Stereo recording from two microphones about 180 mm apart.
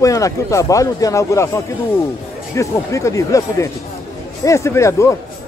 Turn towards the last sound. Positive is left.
turn(degrees=15)  # may be behind; listen again after turning